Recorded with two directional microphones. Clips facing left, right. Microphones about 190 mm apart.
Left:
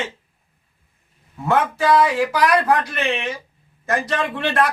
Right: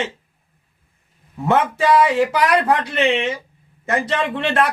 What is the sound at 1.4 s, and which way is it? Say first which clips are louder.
Speech: right 1 dB; 25° right (ahead or behind).